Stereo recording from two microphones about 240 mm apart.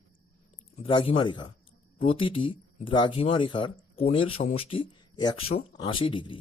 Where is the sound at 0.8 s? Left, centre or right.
Left.